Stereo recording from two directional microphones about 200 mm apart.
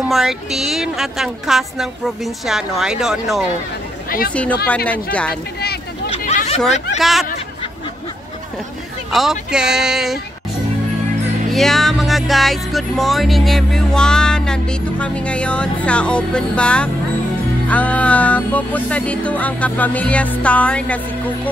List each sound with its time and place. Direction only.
0.1 s music: centre (ahead or behind)
6.0 s chatter: 35° left (ahead or behind)
7.0 s music: centre (ahead or behind)
9.1 s music: centre (ahead or behind)
11.5 s music: centre (ahead or behind)